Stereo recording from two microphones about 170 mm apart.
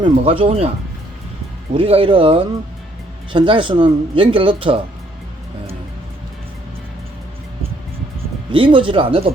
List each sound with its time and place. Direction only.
0.0 s speech: 30° right (ahead or behind)
1.7 s speech: 30° right (ahead or behind)
8.5 s speech: 30° right (ahead or behind)